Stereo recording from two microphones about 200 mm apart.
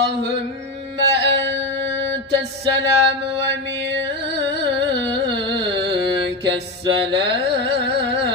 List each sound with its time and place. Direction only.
0.9 s music: 60° right (ahead or behind)
4.3 s carnatic music: 60° right (ahead or behind)